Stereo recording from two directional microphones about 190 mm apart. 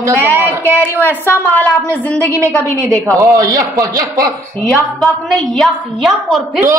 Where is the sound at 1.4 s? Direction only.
5° left (ahead or behind).